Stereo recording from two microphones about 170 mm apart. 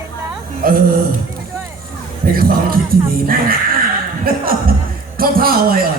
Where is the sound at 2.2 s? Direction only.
60° right (ahead or behind).